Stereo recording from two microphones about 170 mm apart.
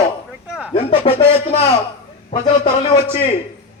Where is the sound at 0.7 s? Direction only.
35° left (ahead or behind).